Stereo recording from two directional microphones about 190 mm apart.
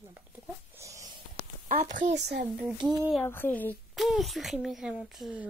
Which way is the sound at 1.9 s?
40° right (ahead or behind).